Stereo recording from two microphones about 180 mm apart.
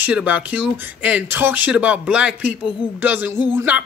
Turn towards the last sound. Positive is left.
turn(degrees=-10)  # may be behind; listen again after turning